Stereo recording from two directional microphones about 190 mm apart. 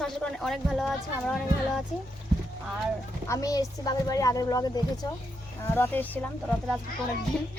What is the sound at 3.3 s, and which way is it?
A woman's voice, 20° left (ahead or behind).